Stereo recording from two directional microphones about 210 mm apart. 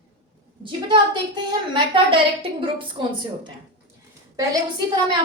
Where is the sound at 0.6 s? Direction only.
20° right (ahead or behind).